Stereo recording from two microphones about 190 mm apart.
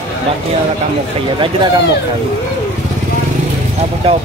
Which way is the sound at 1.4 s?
25° right (ahead or behind).